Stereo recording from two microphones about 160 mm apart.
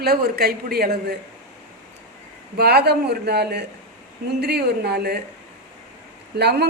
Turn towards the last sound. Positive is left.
turn(degrees=-90)